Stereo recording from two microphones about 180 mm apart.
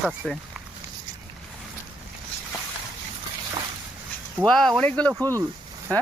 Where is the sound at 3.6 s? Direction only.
25° right (ahead or behind).